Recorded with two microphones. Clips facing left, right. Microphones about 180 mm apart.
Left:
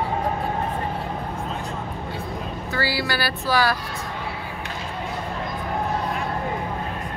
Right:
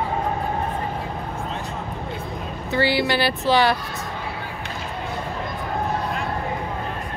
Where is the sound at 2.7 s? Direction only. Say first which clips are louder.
Right 6 dB; 20° right (ahead or behind).